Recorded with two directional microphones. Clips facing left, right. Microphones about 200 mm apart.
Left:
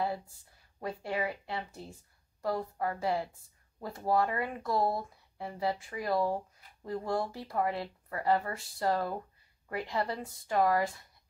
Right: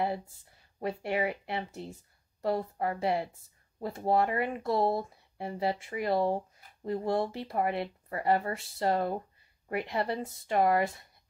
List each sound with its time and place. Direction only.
0.7 s speech: 25° right (ahead or behind)